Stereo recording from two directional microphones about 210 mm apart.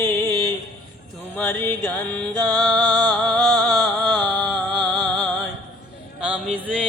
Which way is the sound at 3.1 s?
5° left (ahead or behind).